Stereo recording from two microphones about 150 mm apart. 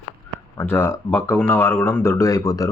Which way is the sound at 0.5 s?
15° left (ahead or behind).